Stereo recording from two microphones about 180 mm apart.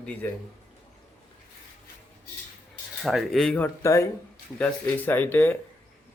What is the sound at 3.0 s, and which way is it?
A man's voice, centre (ahead or behind).